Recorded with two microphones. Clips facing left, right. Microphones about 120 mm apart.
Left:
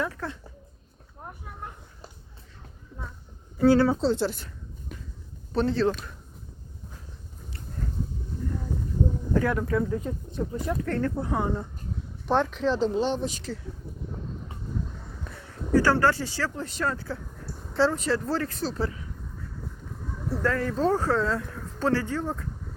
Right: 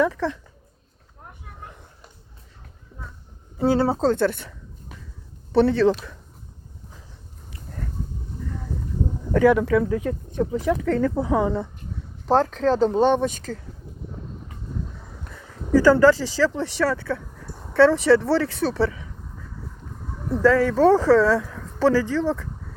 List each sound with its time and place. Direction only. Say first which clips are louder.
0.0 s speech: right 9 dB; 90° right
3.6 s speech: even; 25° right (ahead or behind)
3.9 s a woman's voice: right 5 dB; 50° right (ahead or behind)
5.5 s speech: right 7 dB; 75° right (ahead or behind)
9.3 s speech: right 10 dB; 90° right
12.2 s speech: right 5 dB; 35° right (ahead or behind)
16.1 s speech: right 8 dB; 90° right; by 18.9 s 75° right (ahead or behind)
20.4 s speech: right 9 dB; 90° right